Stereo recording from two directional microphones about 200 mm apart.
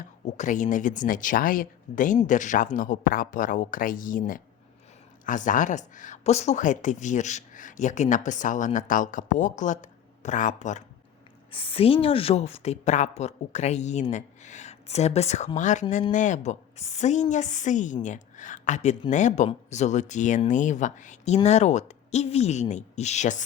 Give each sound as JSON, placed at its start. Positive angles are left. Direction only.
{"t": 0.0, "sound": "speech", "side_deg": 40}